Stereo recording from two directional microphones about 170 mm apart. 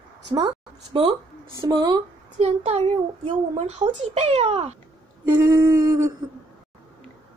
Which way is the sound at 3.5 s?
40° right (ahead or behind).